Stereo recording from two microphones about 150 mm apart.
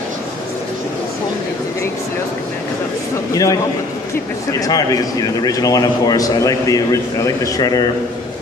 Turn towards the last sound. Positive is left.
turn(degrees=25)  # may be behind; listen again after turning